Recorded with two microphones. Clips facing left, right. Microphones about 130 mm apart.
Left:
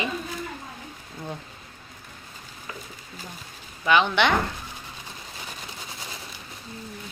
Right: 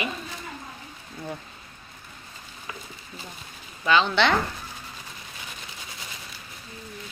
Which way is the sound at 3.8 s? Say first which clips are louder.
Even; 15° left (ahead or behind).